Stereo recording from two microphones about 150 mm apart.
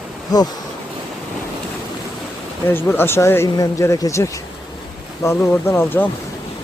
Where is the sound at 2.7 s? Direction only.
15° left (ahead or behind).